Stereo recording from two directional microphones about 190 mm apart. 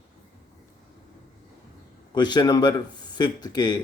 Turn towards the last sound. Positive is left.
turn(degrees=20)  # may be behind; listen again after turning